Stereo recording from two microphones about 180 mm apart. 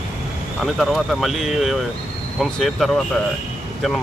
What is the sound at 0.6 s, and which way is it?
Speech, centre (ahead or behind).